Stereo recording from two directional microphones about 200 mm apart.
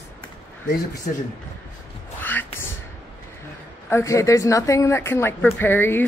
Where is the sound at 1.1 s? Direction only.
35° left (ahead or behind).